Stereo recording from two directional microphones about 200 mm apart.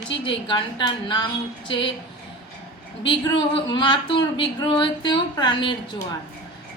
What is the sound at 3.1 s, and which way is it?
A woman's voice, 25° left (ahead or behind).